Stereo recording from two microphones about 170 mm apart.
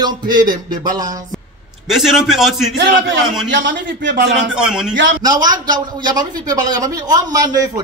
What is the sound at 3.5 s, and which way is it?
Speech, 90° right.